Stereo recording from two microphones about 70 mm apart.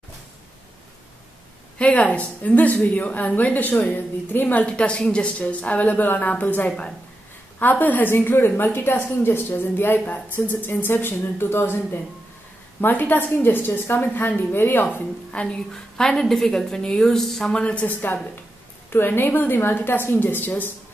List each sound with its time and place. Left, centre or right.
1.8 s a woman's voice: left
15.4 s a woman's voice: centre
17.6 s a woman's voice: centre